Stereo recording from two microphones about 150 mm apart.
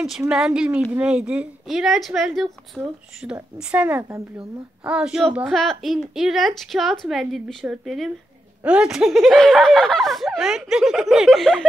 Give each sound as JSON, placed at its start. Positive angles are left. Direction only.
{"t": 0.3, "sound": "a woman's voice", "side_deg": -5}